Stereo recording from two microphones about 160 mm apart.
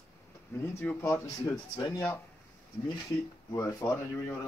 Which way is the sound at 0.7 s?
15° left (ahead or behind).